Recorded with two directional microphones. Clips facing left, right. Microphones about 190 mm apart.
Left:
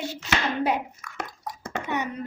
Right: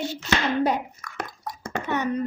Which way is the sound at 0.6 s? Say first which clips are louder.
Right 1 dB; 10° left (ahead or behind).